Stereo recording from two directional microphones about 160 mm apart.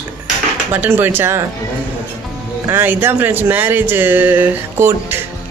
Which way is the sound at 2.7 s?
10° right (ahead or behind).